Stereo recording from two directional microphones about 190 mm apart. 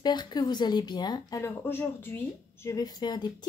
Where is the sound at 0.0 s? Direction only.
20° left (ahead or behind).